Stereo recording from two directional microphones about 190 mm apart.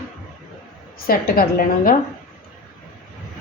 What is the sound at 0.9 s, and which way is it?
A woman's voice, 50° left (ahead or behind).